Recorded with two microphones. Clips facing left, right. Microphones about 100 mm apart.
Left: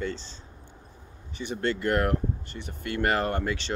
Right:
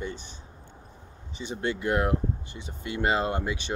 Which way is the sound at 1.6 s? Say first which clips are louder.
Left 1 dB; 15° right (ahead or behind).